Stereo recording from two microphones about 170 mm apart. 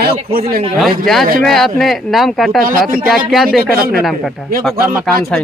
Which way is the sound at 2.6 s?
55° right (ahead or behind).